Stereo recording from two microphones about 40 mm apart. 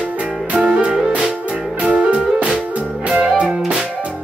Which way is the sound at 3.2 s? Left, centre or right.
Centre.